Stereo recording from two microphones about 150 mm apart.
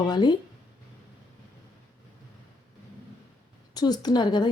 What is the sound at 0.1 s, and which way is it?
Speech, 30° left (ahead or behind).